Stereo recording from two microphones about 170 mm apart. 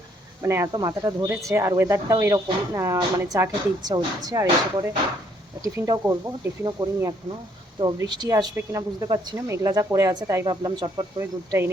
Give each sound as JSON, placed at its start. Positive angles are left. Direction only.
{"t": 0.4, "sound": "speech", "side_deg": -15}
{"t": 11.2, "sound": "speech", "side_deg": -15}